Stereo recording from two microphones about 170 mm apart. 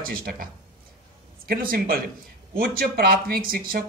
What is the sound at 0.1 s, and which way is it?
Speech, 55° right (ahead or behind).